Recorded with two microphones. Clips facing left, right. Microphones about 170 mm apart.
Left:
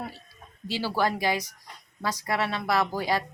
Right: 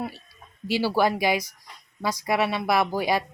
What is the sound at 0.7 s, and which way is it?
Speech, 10° right (ahead or behind).